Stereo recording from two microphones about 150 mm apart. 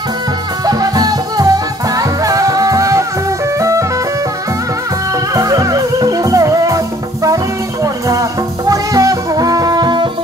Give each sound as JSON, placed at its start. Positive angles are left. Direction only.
{"t": 0.7, "sound": "music", "side_deg": -25}
{"t": 5.3, "sound": "music", "side_deg": -25}
{"t": 7.8, "sound": "music", "side_deg": -20}